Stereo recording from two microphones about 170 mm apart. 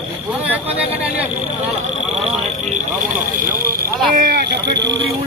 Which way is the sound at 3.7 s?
60° right (ahead or behind).